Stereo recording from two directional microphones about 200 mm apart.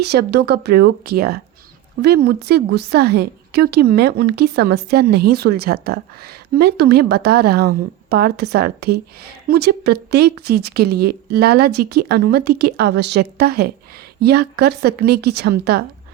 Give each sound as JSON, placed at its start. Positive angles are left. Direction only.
{"t": 0.0, "sound": "speech", "side_deg": -55}